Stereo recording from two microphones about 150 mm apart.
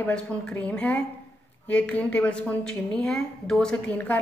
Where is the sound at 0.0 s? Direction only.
10° left (ahead or behind).